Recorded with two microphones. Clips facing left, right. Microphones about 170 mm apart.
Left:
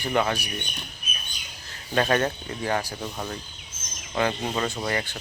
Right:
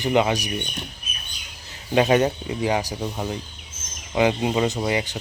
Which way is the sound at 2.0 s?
15° right (ahead or behind).